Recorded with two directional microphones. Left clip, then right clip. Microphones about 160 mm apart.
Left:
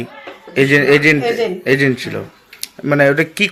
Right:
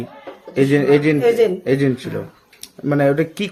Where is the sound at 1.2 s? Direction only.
45° right (ahead or behind).